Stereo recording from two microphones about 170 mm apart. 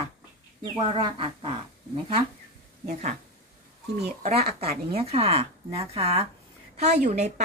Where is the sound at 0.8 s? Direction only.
30° right (ahead or behind).